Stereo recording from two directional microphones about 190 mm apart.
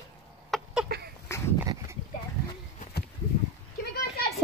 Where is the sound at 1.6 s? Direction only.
20° right (ahead or behind).